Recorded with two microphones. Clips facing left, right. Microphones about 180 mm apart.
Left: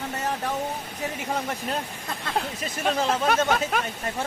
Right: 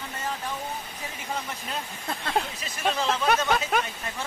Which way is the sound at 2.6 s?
45° left (ahead or behind).